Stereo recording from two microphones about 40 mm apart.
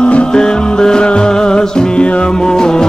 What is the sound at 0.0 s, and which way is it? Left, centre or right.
Music, left.